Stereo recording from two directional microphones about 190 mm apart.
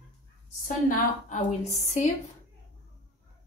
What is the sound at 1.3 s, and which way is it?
Speech, 40° left (ahead or behind).